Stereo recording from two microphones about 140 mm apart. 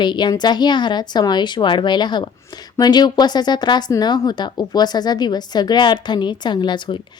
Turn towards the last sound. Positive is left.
turn(degrees=35)  # may be behind; listen again after turning